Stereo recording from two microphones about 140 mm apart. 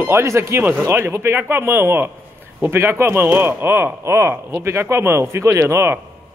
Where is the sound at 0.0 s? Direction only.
20° right (ahead or behind).